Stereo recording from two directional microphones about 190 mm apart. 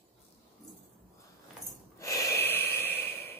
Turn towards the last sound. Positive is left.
turn(degrees=10)  # may be behind; listen again after turning